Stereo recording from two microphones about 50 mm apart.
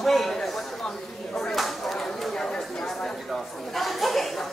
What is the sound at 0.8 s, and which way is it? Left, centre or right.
Speech, centre.